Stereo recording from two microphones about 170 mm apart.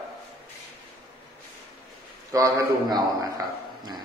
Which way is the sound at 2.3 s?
20° right (ahead or behind).